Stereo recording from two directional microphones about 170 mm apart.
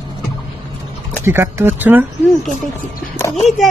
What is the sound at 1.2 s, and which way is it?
Speech, 15° right (ahead or behind).